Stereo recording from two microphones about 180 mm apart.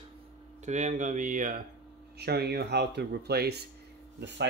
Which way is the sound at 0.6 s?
40° right (ahead or behind).